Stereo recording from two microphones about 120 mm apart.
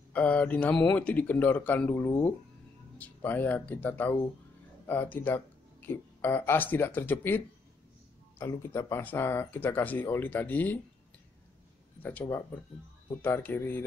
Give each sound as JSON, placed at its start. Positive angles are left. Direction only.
{"t": 0.1, "sound": "speech", "side_deg": 10}
{"t": 12.0, "sound": "speech", "side_deg": 15}